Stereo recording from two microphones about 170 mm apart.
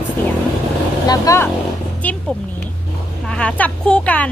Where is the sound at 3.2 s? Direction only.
5° left (ahead or behind).